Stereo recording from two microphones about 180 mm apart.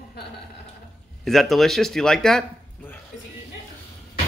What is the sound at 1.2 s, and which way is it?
Speech, centre (ahead or behind).